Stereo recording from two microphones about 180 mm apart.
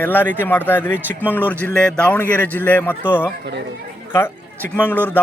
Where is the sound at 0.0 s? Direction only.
10° left (ahead or behind).